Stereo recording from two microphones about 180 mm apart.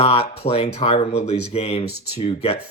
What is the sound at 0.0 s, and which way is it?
Speech, 35° left (ahead or behind).